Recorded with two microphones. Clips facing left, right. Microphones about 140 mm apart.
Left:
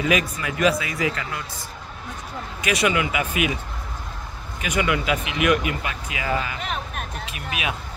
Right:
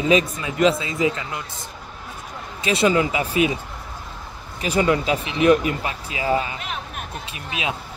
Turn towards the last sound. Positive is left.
turn(degrees=-25)  # may be behind; listen again after turning